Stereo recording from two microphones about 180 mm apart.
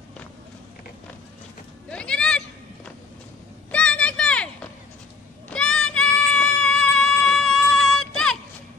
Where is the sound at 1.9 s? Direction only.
5° left (ahead or behind).